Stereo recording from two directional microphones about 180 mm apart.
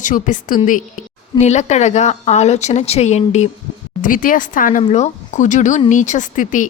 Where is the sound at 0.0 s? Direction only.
45° left (ahead or behind).